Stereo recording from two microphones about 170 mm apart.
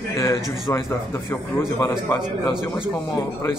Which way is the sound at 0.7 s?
15° left (ahead or behind).